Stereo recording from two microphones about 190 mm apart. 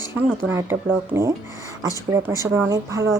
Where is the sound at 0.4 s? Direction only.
15° right (ahead or behind).